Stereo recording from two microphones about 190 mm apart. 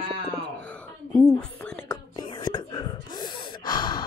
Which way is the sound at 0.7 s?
5° left (ahead or behind).